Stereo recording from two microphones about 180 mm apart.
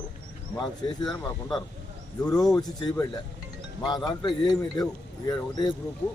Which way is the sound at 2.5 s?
20° left (ahead or behind).